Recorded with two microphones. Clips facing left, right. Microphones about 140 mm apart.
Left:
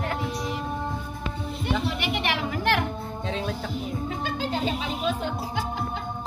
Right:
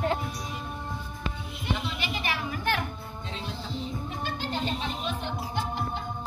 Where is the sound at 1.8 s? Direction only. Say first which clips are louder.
Left 5 dB; 65° left (ahead or behind).